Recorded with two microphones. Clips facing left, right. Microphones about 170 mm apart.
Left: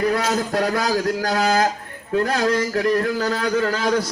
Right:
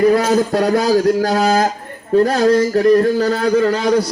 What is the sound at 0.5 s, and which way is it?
A man's voice, 35° right (ahead or behind).